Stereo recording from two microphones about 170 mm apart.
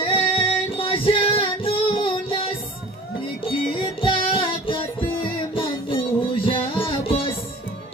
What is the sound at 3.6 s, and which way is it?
Music, 30° left (ahead or behind).